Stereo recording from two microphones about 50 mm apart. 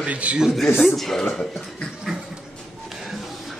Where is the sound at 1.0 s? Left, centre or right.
Centre.